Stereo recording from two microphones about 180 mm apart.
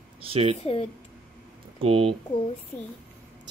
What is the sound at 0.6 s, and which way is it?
Speech, 30° left (ahead or behind).